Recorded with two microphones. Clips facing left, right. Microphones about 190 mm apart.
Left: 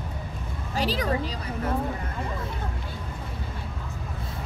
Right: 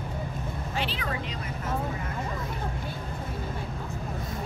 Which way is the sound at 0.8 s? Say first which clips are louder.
Left 7 dB; 40° left (ahead or behind).